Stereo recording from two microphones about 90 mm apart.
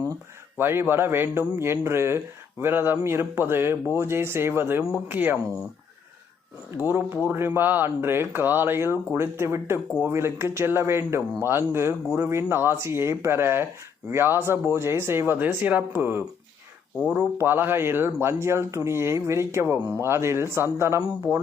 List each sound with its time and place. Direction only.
0.5 s a man's voice: 25° right (ahead or behind)
6.8 s a man's voice: 20° right (ahead or behind)